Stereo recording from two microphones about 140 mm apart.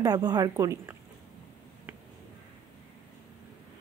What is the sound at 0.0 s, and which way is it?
Speech, 30° right (ahead or behind).